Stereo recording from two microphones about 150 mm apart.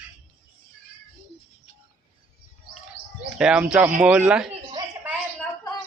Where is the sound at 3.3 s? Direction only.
5° right (ahead or behind).